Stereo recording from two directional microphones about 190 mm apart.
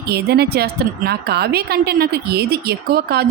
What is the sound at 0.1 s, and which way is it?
Speech, 55° right (ahead or behind).